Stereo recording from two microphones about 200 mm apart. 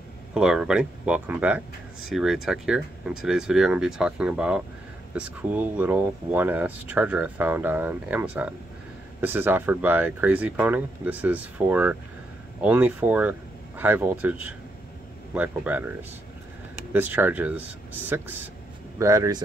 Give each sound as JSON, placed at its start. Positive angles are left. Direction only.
{"t": 0.3, "sound": "speech", "side_deg": -5}
{"t": 16.9, "sound": "speech", "side_deg": -10}